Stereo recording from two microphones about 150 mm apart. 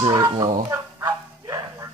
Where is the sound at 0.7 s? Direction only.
25° right (ahead or behind).